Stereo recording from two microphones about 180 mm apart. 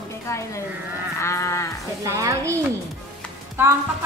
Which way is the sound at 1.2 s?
15° left (ahead or behind).